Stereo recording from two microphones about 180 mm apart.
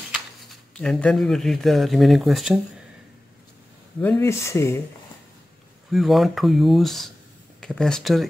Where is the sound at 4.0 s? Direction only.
10° left (ahead or behind).